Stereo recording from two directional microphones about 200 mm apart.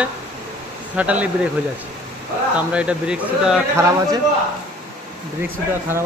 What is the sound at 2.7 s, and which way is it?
Speech, 5° right (ahead or behind).